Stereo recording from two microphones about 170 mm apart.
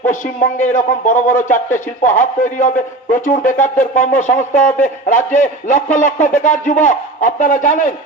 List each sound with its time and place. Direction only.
0.0 s a man's voice: 50° left (ahead or behind)